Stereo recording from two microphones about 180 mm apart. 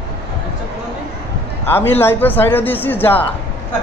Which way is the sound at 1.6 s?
10° left (ahead or behind).